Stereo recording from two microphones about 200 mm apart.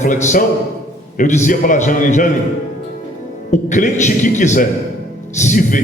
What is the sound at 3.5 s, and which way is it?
A man's voice, 40° left (ahead or behind).